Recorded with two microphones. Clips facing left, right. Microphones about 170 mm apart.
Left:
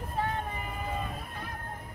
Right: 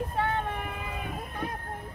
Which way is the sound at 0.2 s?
65° right (ahead or behind).